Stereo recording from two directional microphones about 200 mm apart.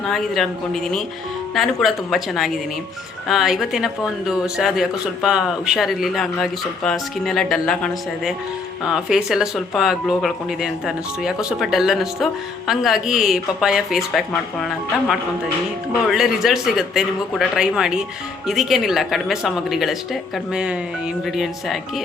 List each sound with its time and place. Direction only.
0.0 s speech: centre (ahead or behind)